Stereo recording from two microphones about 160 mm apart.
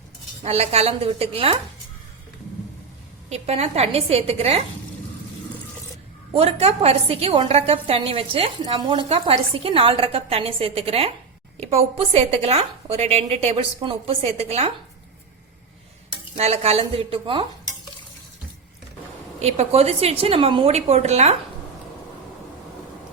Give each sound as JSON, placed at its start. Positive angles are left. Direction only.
{"t": 0.4, "sound": "a woman's voice", "side_deg": -40}
{"t": 3.2, "sound": "a woman's voice", "side_deg": -40}
{"t": 6.3, "sound": "a woman's voice", "side_deg": -35}
{"t": 16.4, "sound": "a woman's voice", "side_deg": -40}
{"t": 19.4, "sound": "a woman's voice", "side_deg": -40}